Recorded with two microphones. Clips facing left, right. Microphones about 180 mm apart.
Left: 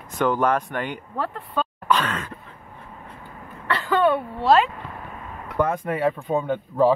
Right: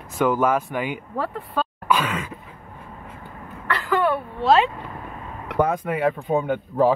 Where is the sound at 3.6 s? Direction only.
25° left (ahead or behind).